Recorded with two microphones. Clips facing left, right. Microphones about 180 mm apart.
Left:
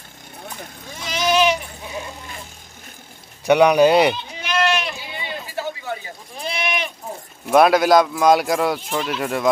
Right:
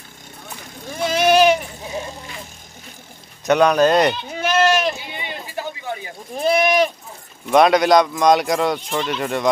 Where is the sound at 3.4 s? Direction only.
10° left (ahead or behind).